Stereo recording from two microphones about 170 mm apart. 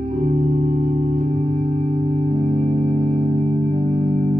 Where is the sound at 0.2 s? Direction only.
45° right (ahead or behind).